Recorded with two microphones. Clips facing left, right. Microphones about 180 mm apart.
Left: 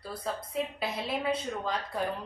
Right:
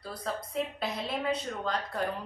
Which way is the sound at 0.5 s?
5° left (ahead or behind).